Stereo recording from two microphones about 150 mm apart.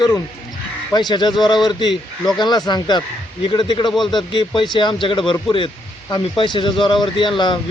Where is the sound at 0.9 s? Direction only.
30° left (ahead or behind).